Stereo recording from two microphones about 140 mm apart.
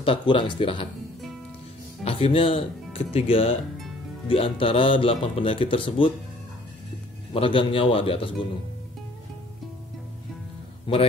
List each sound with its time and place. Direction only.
0.0 s speech: 40° left (ahead or behind)
2.0 s speech: 45° left (ahead or behind)
7.3 s speech: 40° left (ahead or behind)
10.9 s speech: 40° left (ahead or behind)